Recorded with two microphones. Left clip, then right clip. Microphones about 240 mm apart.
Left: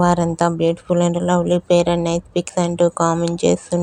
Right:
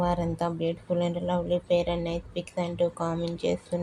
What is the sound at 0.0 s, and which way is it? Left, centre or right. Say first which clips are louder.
Speech: left 11 dB; left.